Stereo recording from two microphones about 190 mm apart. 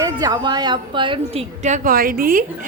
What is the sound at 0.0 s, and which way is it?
A woman's voice, 20° right (ahead or behind).